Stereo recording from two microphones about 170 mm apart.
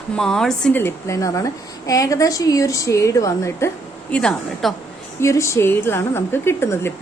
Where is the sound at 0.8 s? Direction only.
20° left (ahead or behind).